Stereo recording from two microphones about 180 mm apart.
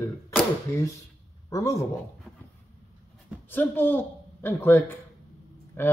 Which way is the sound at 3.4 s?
10° left (ahead or behind).